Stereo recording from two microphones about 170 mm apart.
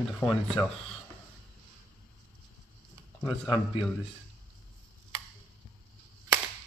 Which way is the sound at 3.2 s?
30° left (ahead or behind).